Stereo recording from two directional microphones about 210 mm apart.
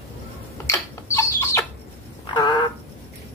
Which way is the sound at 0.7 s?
15° left (ahead or behind).